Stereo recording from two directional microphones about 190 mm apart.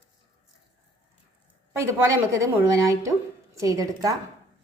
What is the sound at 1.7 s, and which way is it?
A woman's voice, 15° right (ahead or behind).